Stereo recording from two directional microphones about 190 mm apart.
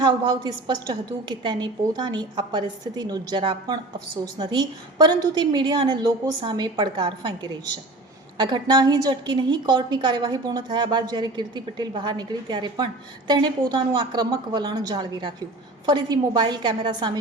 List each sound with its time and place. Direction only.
0.0 s a woman's voice: 25° right (ahead or behind)